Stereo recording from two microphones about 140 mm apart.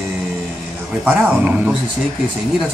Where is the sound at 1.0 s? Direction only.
10° right (ahead or behind).